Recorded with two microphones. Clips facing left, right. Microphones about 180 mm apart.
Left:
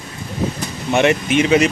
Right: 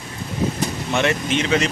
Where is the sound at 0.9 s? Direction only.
15° left (ahead or behind).